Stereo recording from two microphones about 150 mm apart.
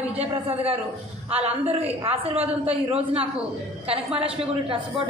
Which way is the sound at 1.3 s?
40° right (ahead or behind).